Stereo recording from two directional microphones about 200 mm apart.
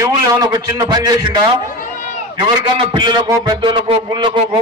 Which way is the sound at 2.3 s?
25° right (ahead or behind).